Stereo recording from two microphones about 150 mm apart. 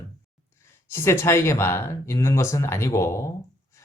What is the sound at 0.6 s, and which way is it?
Speech, 15° left (ahead or behind).